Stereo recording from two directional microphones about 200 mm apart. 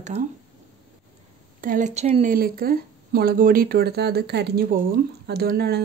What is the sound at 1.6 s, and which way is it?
Speech, 40° right (ahead or behind).